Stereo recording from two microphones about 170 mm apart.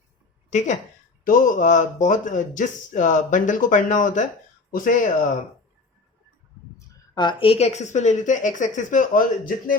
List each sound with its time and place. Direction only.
0.5 s speech: 45° left (ahead or behind)
6.7 s speech: 20° left (ahead or behind); by 9.7 s 55° left (ahead or behind)